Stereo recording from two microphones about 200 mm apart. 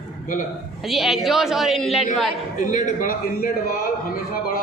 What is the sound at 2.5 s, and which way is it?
Speech, 40° left (ahead or behind).